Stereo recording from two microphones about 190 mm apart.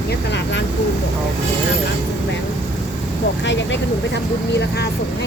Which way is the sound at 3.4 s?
70° left (ahead or behind).